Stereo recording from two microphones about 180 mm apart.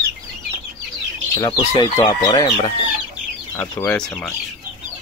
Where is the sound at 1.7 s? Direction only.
30° left (ahead or behind).